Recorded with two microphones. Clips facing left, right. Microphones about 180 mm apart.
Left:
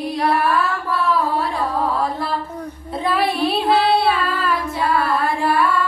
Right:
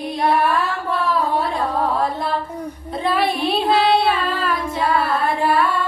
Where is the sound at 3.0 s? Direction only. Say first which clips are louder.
Even; centre (ahead or behind).